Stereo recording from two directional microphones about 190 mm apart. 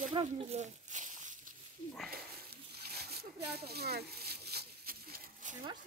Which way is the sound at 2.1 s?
55° right (ahead or behind).